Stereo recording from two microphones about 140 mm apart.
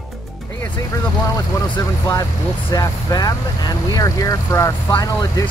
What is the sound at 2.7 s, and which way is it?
Speech, 25° left (ahead or behind).